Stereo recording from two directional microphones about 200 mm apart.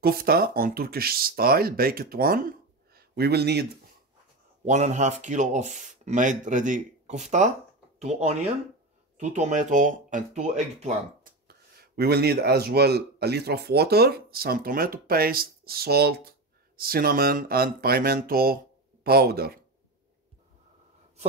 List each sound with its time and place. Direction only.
0.0 s speech: 50° right (ahead or behind)
4.6 s speech: 35° right (ahead or behind)
11.4 s speech: 50° right (ahead or behind)